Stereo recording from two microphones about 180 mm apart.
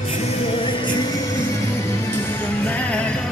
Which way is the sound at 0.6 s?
30° left (ahead or behind).